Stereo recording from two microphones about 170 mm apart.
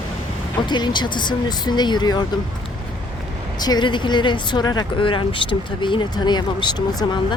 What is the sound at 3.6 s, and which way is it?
Speech, 25° left (ahead or behind).